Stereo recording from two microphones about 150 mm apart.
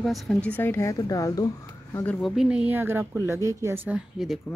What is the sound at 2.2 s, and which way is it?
Speech, centre (ahead or behind).